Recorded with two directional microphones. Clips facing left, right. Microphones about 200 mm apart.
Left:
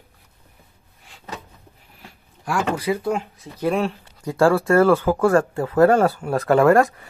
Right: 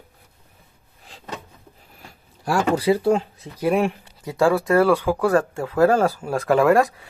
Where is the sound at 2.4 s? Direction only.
30° right (ahead or behind).